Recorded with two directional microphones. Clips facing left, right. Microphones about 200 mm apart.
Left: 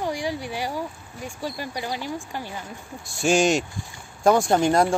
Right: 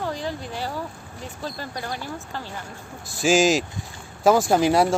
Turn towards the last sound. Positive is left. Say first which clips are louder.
# right 1 dB
turn(degrees=-5)  # may be behind; listen again after turning